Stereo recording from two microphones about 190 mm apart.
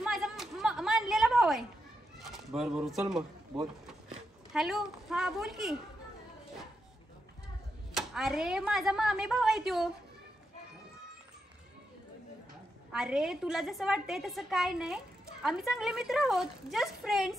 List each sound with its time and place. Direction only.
0.0 s a sound: centre (ahead or behind)
3.5 s a woman's voice: centre (ahead or behind)
7.9 s a woman's voice: centre (ahead or behind)
12.9 s a woman's voice: centre (ahead or behind)